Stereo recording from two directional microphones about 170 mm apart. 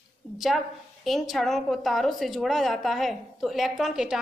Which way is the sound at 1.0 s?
Centre (ahead or behind).